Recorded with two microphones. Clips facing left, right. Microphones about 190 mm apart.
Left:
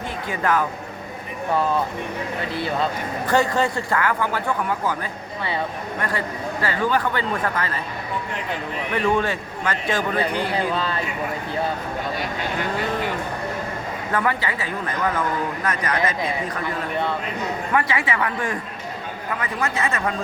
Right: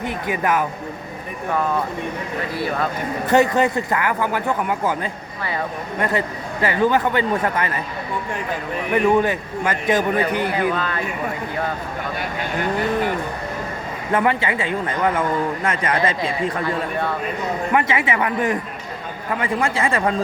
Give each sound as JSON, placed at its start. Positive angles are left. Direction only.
{"t": 0.3, "sound": "a man's voice", "side_deg": -15}
{"t": 3.2, "sound": "a man's voice", "side_deg": -20}
{"t": 6.0, "sound": "a man's voice", "side_deg": -20}
{"t": 8.9, "sound": "a man's voice", "side_deg": -15}
{"t": 14.1, "sound": "a man's voice", "side_deg": -25}
{"t": 17.7, "sound": "a man's voice", "side_deg": -20}